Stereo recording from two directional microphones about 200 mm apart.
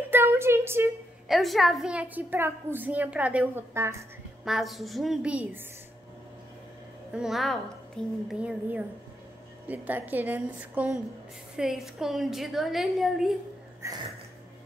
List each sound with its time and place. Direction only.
0.1 s speech: 10° right (ahead or behind)
1.3 s a woman's voice: centre (ahead or behind)
4.5 s a woman's voice: centre (ahead or behind)
7.1 s a woman's voice: 5° right (ahead or behind)
13.8 s a woman's voice: 15° right (ahead or behind)